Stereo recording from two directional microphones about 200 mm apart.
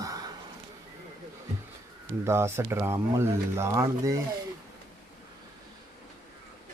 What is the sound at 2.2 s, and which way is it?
Speech, 15° right (ahead or behind).